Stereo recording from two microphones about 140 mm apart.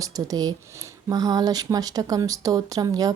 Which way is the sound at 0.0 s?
25° right (ahead or behind).